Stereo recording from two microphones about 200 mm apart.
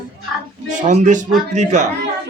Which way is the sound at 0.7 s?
40° right (ahead or behind).